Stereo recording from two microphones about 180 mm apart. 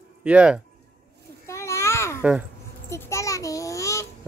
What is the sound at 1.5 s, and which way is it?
Children playing, 15° left (ahead or behind).